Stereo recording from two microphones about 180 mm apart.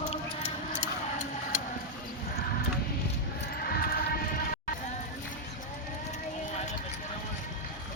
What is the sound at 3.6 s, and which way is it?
Music, 55° left (ahead or behind).